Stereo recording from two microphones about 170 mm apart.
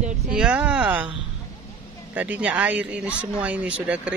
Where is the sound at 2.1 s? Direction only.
10° right (ahead or behind).